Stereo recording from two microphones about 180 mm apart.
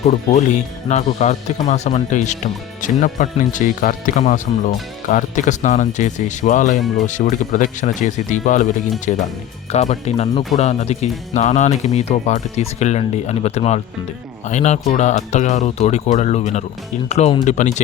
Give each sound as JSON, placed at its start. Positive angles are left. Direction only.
{"t": 0.1, "sound": "speech", "side_deg": 40}